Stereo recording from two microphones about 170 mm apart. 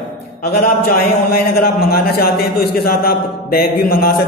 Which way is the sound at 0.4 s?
65° left (ahead or behind).